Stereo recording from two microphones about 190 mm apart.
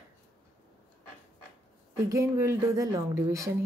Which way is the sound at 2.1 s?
15° right (ahead or behind).